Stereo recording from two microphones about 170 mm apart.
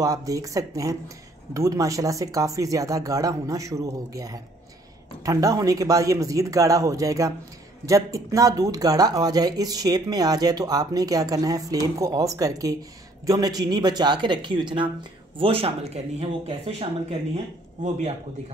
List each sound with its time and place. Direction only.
0.0 s speech: 20° right (ahead or behind); by 16.7 s 35° right (ahead or behind)